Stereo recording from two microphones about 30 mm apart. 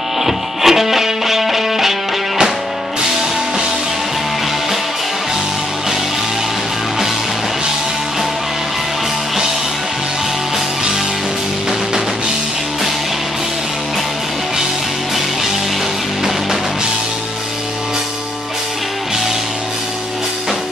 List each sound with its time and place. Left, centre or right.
0.2 s music: centre